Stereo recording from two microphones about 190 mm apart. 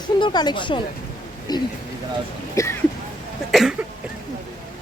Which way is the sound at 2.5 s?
15° left (ahead or behind).